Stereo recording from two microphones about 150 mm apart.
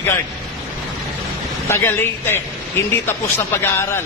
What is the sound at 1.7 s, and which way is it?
A man's voice, 15° left (ahead or behind).